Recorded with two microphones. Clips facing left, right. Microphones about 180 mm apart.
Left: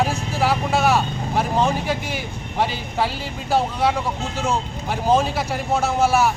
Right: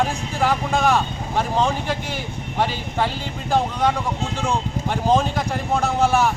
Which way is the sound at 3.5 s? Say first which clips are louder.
Even; 10° left (ahead or behind).